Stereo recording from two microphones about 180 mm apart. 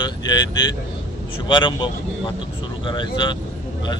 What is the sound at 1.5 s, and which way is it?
Speech, 25° left (ahead or behind).